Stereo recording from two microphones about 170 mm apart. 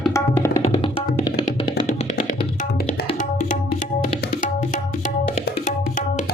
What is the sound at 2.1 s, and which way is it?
Music, 60° left (ahead or behind).